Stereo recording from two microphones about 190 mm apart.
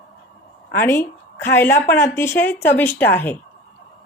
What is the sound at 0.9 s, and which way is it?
A woman's voice, 10° left (ahead or behind).